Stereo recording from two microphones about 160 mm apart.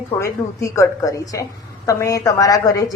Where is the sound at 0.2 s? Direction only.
20° left (ahead or behind).